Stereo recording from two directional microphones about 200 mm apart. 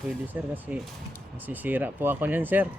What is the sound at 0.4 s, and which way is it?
Speech, 5° right (ahead or behind).